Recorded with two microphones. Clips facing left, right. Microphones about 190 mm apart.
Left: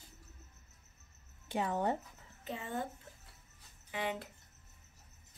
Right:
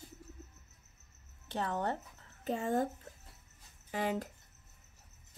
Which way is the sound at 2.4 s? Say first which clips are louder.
Right 7 dB; 45° right (ahead or behind).